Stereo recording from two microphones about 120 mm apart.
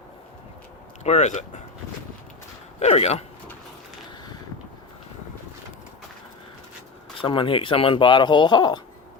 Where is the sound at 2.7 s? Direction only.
60° left (ahead or behind).